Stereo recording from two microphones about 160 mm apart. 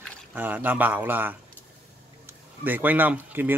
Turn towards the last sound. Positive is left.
turn(degrees=-10)  # may be behind; listen again after turning